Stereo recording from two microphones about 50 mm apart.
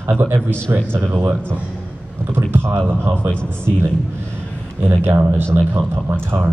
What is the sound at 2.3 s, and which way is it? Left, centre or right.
Speech, right.